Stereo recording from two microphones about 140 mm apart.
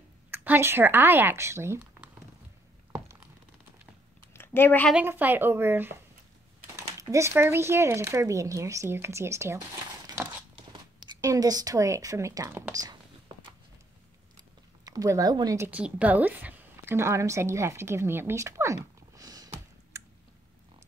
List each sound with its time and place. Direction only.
0.3 s speech: 15° right (ahead or behind)
2.9 s crumpling: 10° right (ahead or behind)
4.6 s speech: 15° left (ahead or behind)
4.9 s speech: 15° right (ahead or behind)
7.0 s speech: 20° right (ahead or behind)
11.1 s speech: 25° right (ahead or behind)
14.9 s speech: 25° right (ahead or behind)